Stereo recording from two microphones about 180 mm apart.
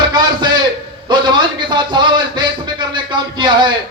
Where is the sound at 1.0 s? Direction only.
25° right (ahead or behind).